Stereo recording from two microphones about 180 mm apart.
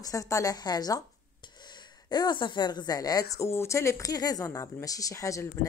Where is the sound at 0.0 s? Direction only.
20° left (ahead or behind).